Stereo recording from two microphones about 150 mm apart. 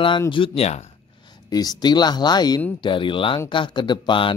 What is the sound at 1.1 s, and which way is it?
Speech, 30° left (ahead or behind).